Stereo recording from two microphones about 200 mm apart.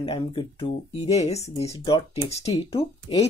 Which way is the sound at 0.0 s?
25° left (ahead or behind).